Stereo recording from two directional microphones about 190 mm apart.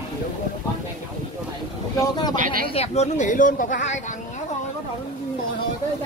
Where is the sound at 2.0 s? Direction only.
20° left (ahead or behind).